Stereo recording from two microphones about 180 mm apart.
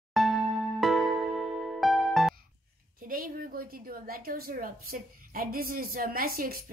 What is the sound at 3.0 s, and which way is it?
A woman's voice, 55° right (ahead or behind).